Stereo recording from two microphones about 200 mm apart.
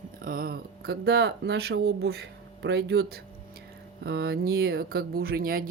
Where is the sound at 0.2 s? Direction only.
45° right (ahead or behind).